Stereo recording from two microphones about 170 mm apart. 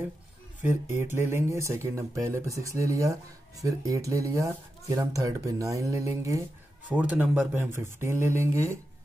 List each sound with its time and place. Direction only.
0.6 s speech: 10° right (ahead or behind)
6.9 s speech: 5° right (ahead or behind)